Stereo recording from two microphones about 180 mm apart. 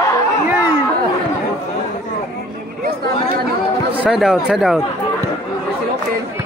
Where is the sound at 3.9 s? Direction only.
5° right (ahead or behind).